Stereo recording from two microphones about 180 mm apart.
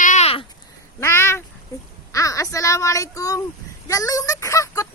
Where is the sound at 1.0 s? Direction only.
15° left (ahead or behind).